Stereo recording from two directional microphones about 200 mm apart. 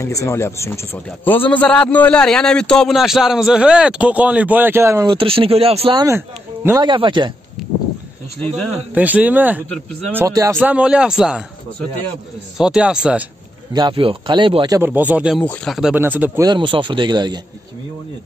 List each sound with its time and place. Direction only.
0.0 s a man's voice: 15° left (ahead or behind); by 6.0 s 30° right (ahead or behind)
6.0 s speech: 15° right (ahead or behind)
8.9 s a man's voice: 10° right (ahead or behind)
12.5 s a man's voice: 5° right (ahead or behind)
13.7 s speech: 25° right (ahead or behind)
14.8 s a man's voice: 10° right (ahead or behind)
16.4 s speech: 25° right (ahead or behind)